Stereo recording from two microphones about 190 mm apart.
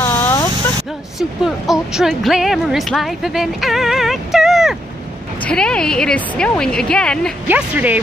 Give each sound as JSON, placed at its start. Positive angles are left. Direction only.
{"t": 0.0, "sound": "a sound", "side_deg": 15}
{"t": 1.4, "sound": "speech", "side_deg": -5}
{"t": 7.4, "sound": "speech", "side_deg": -10}